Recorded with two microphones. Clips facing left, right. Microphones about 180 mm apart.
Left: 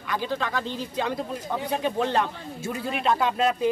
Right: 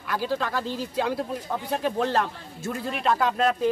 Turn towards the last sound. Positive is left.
turn(degrees=0)  # may be behind; listen again after turning